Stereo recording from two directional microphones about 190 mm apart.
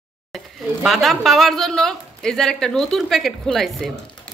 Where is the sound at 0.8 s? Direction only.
Centre (ahead or behind).